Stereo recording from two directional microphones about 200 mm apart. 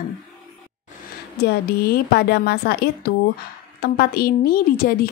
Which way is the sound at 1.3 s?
55° left (ahead or behind).